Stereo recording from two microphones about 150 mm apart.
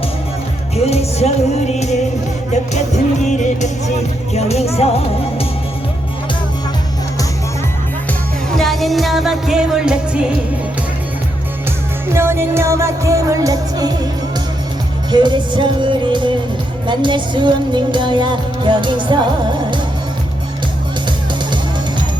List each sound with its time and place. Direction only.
0.9 s music: 45° left (ahead or behind)
3.2 s music: 55° left (ahead or behind)
8.4 s music: centre (ahead or behind)
12.1 s music: 15° right (ahead or behind)
15.1 s music: 30° right (ahead or behind)